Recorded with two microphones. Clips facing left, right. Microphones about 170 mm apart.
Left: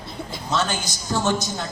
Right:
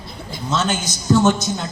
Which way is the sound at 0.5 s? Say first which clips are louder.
Right 3 dB; 20° right (ahead or behind).